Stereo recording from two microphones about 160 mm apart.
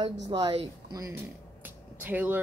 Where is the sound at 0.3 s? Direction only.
35° right (ahead or behind).